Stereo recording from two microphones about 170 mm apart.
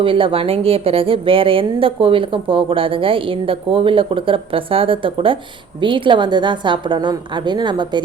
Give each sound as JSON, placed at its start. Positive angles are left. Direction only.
{"t": 0.0, "sound": "a woman's voice", "side_deg": -30}